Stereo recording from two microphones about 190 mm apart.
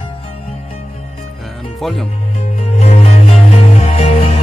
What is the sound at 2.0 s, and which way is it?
Music, 35° left (ahead or behind).